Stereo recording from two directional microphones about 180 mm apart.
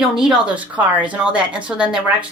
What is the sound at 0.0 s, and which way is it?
Speech, 5° right (ahead or behind).